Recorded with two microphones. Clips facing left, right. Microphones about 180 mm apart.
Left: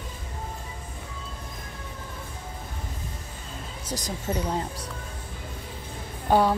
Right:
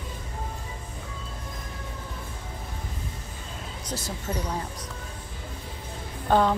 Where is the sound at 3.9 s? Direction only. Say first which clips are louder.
Left 1 dB; 15° left (ahead or behind).